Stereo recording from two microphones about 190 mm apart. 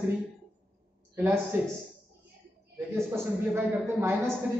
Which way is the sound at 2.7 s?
15° right (ahead or behind).